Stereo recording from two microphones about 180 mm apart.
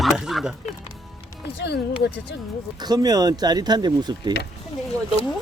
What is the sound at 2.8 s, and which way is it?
Speech, 20° right (ahead or behind).